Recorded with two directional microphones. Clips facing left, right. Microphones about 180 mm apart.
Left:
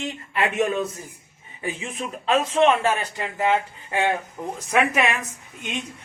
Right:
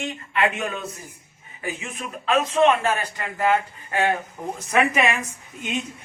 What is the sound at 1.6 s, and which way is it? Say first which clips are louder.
Speech: left 2 dB; 30° left (ahead or behind).